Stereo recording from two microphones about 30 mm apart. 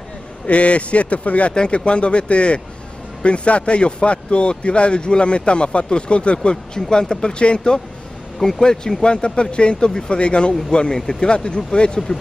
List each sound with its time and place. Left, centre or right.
0.5 s speech: left
1.7 s speech: left
6.5 s speech: left
8.4 s speech: centre
9.0 s speech: left